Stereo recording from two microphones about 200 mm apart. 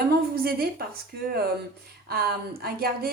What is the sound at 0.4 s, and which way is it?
Speech, 50° right (ahead or behind).